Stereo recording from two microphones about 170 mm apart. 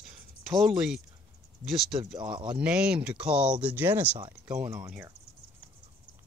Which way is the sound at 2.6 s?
5° right (ahead or behind).